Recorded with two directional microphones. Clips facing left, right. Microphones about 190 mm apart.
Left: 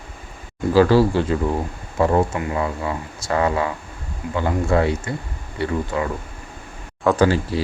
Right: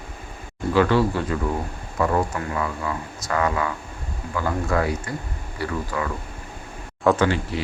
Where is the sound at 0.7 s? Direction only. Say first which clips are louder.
Left 4 dB; 35° left (ahead or behind).